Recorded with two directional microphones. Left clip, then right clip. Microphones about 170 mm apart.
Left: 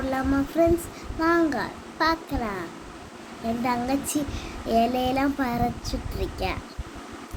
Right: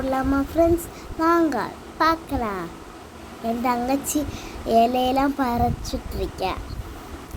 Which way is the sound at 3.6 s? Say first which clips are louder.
Right 3 dB; 15° right (ahead or behind).